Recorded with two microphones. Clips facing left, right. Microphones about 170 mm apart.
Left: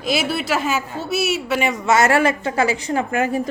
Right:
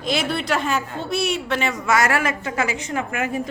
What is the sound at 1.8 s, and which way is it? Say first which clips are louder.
A woman's voice: left 5 dB; 25° left (ahead or behind).